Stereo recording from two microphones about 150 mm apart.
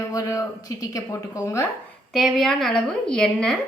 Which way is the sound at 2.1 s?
Centre (ahead or behind).